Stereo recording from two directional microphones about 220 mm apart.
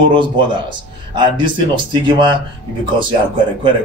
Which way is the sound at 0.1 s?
20° right (ahead or behind).